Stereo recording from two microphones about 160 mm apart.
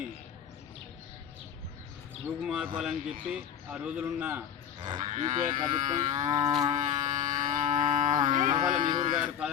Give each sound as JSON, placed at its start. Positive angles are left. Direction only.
{"t": 2.4, "sound": "a man's voice", "side_deg": -5}
{"t": 4.8, "sound": "livestock", "side_deg": -30}
{"t": 5.1, "sound": "speech", "side_deg": -50}
{"t": 5.5, "sound": "livestock", "side_deg": -25}
{"t": 6.7, "sound": "livestock", "side_deg": -50}
{"t": 7.9, "sound": "moo", "side_deg": -50}
{"t": 8.6, "sound": "livestock", "side_deg": -55}